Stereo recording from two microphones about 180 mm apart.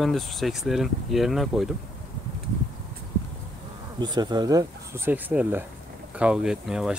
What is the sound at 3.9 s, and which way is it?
Speech, 25° right (ahead or behind).